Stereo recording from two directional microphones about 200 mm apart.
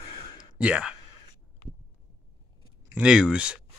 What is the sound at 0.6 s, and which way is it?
Speech, 5° right (ahead or behind).